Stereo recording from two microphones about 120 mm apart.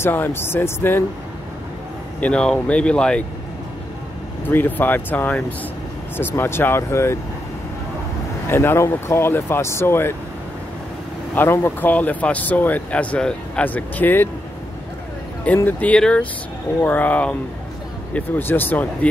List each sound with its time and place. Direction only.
0.0 s speech: 20° left (ahead or behind)
2.1 s speech: 10° left (ahead or behind)
4.5 s speech: 15° left (ahead or behind)
8.5 s speech: 20° left (ahead or behind)
11.3 s speech: 20° left (ahead or behind)
15.4 s speech: 15° left (ahead or behind)